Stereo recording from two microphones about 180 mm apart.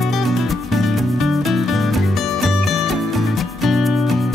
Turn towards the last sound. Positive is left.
turn(degrees=0)  # may be behind; listen again after turning